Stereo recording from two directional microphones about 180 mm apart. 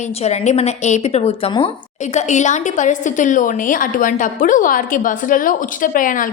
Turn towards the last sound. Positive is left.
turn(degrees=50)  # may be behind; listen again after turning